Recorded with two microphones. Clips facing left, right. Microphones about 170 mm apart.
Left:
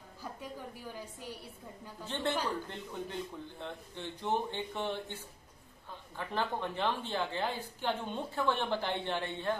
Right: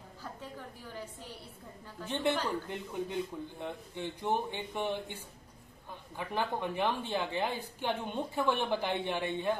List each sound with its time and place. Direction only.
0.2 s a woman's voice: 10° left (ahead or behind)
2.0 s speech: 15° right (ahead or behind)